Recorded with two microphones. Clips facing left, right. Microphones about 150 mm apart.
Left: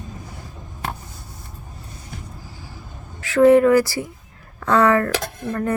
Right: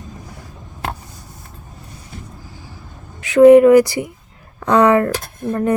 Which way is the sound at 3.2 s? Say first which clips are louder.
Right 6 dB; 20° right (ahead or behind).